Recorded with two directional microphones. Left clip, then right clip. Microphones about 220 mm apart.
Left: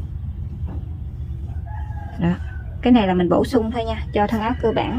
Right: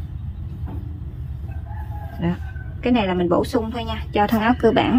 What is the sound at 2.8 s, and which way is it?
Speech, 20° left (ahead or behind).